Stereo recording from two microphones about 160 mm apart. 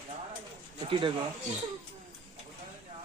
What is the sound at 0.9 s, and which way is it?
Speech, 30° right (ahead or behind).